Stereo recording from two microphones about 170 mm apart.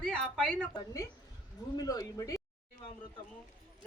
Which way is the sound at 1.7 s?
20° left (ahead or behind).